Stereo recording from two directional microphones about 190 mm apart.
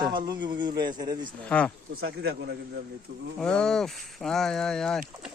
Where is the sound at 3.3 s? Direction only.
5° left (ahead or behind).